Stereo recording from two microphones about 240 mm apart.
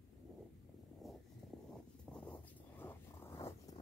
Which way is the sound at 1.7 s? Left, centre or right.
Centre.